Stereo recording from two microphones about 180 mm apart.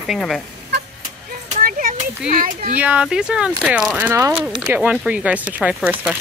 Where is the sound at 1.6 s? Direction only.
50° right (ahead or behind).